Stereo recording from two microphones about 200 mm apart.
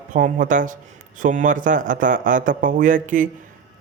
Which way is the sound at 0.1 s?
40° right (ahead or behind).